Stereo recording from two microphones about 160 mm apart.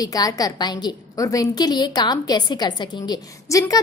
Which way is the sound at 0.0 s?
25° left (ahead or behind).